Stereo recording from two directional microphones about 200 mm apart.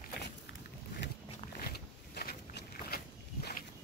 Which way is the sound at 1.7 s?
50° left (ahead or behind).